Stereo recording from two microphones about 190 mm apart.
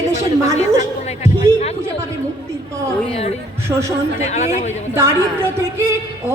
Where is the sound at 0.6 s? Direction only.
35° left (ahead or behind).